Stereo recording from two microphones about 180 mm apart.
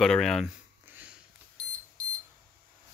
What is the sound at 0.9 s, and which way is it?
Sniff, 10° right (ahead or behind).